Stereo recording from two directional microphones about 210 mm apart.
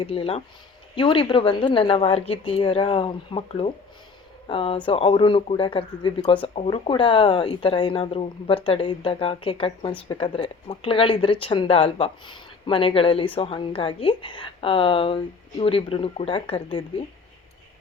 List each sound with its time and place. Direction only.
0.0 s speech: 25° left (ahead or behind)